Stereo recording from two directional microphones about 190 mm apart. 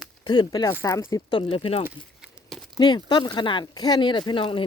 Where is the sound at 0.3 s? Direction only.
20° left (ahead or behind).